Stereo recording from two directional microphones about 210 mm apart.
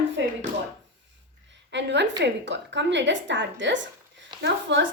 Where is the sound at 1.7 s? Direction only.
55° right (ahead or behind).